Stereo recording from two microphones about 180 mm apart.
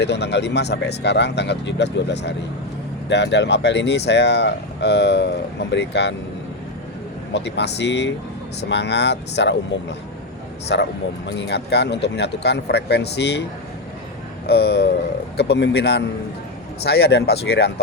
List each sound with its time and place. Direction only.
0.0 s speech: 70° left (ahead or behind)
7.3 s speech: 70° left (ahead or behind)
10.7 s speech: 85° left; by 13.4 s 70° left (ahead or behind)
14.4 s speech: 65° left (ahead or behind)